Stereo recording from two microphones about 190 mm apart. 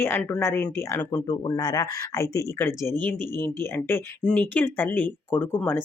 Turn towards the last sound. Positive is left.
turn(degrees=10)  # may be behind; listen again after turning